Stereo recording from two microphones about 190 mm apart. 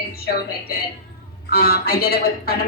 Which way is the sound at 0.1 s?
55° left (ahead or behind).